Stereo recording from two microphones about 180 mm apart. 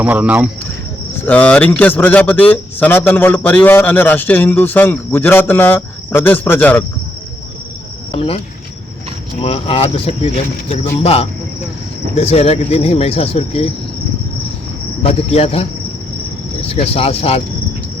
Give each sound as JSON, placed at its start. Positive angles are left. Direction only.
{"t": 0.0, "sound": "speech", "side_deg": -10}
{"t": 1.3, "sound": "a man's voice", "side_deg": 5}
{"t": 8.1, "sound": "cricket", "side_deg": 30}
{"t": 9.4, "sound": "speech", "side_deg": 30}
{"t": 15.0, "sound": "speech", "side_deg": 35}
{"t": 16.6, "sound": "speech", "side_deg": 35}